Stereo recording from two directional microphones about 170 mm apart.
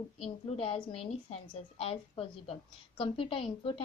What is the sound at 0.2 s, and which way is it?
A woman's voice, 30° left (ahead or behind).